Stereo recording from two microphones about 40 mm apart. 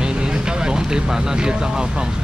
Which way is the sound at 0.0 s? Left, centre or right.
Right.